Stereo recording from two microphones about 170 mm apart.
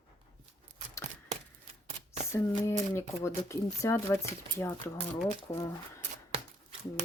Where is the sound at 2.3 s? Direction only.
15° left (ahead or behind).